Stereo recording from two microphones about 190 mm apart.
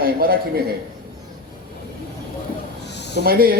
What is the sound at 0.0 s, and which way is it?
Speech, 50° right (ahead or behind).